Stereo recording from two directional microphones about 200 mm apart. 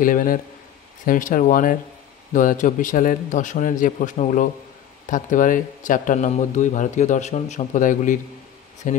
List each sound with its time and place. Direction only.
0.0 s a man's voice: 45° left (ahead or behind)